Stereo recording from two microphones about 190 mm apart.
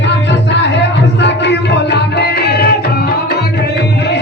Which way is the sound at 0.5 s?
65° left (ahead or behind).